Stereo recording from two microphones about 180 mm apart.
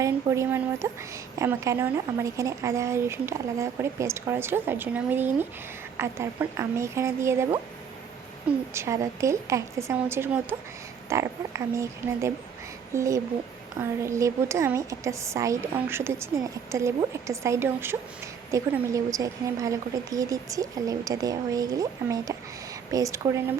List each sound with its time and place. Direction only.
0.0 s speech: 15° right (ahead or behind)
8.7 s a woman's voice: 15° right (ahead or behind)